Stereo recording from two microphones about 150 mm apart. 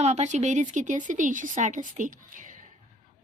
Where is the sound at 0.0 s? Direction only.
50° right (ahead or behind).